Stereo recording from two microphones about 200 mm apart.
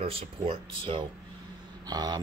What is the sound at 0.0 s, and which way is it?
Speech, 30° right (ahead or behind).